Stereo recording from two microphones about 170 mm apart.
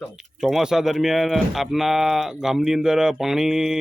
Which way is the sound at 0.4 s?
5° right (ahead or behind).